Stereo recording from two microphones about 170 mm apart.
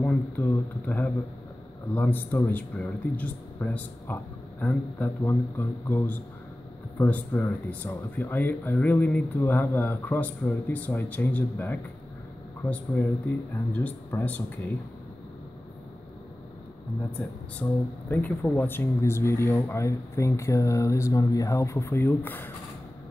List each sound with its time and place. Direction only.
0.0 s speech: 10° left (ahead or behind)
17.2 s speech: 10° left (ahead or behind)